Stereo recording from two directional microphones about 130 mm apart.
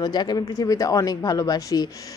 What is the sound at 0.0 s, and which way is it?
Speech, 35° left (ahead or behind).